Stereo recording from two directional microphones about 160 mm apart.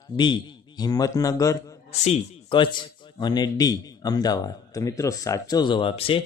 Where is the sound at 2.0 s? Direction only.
35° left (ahead or behind).